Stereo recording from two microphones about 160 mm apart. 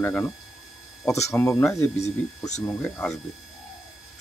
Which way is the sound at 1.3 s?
15° left (ahead or behind).